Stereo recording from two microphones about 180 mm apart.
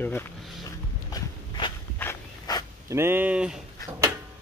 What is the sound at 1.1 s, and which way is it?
Walk, 25° left (ahead or behind).